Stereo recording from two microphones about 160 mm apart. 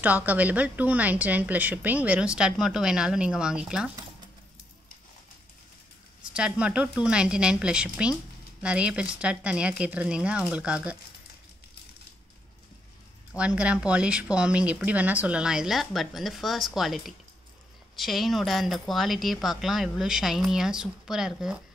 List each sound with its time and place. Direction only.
0.0 s a woman's voice: 10° right (ahead or behind)
6.3 s a woman's voice: 5° right (ahead or behind)
13.4 s speech: 5° right (ahead or behind)